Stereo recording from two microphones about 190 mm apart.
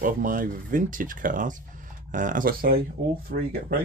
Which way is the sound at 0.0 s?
45° right (ahead or behind).